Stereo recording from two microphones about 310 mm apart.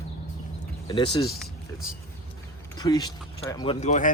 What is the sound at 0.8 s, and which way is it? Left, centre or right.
Speech, centre.